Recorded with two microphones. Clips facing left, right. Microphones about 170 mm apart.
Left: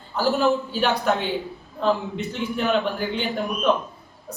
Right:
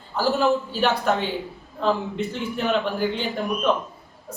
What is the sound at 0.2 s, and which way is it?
Speech, centre (ahead or behind).